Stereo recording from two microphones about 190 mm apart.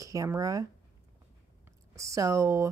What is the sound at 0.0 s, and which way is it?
Speech, 15° right (ahead or behind).